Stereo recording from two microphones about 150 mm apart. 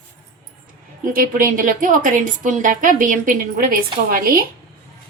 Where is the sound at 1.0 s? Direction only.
65° right (ahead or behind).